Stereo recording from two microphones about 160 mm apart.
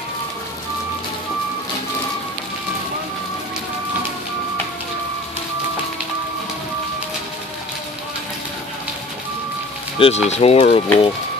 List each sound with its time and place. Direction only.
9.9 s speech: 40° left (ahead or behind)